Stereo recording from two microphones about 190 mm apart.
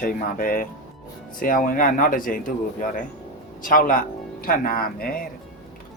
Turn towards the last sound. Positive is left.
turn(degrees=50)  # may be behind; listen again after turning